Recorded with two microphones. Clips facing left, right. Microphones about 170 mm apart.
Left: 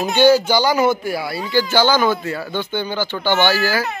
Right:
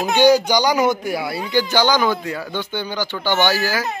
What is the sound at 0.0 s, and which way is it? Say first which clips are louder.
Speech: left 1 dB; 15° right (ahead or behind).